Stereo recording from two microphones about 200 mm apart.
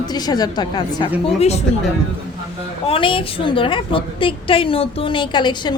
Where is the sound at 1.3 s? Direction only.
30° left (ahead or behind).